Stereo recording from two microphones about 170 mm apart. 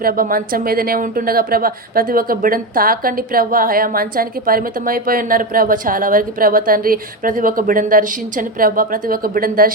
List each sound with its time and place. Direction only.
0.0 s a woman's voice: 55° right (ahead or behind)